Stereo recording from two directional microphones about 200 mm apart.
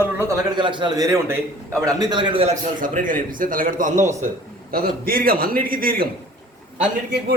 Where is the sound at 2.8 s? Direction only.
40° right (ahead or behind).